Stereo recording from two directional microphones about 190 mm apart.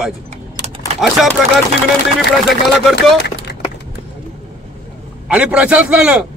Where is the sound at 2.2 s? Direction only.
60° left (ahead or behind).